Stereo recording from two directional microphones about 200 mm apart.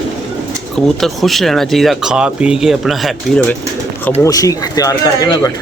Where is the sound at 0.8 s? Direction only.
Centre (ahead or behind).